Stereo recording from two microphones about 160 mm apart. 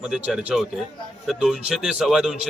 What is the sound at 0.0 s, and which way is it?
A man's voice, 5° right (ahead or behind).